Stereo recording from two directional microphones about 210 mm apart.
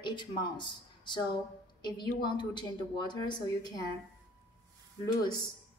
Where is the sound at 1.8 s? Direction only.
20° left (ahead or behind).